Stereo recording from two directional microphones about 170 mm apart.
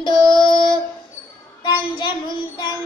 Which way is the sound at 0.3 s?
25° left (ahead or behind).